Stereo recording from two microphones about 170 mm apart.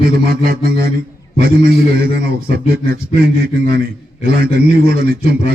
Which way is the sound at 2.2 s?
40° left (ahead or behind).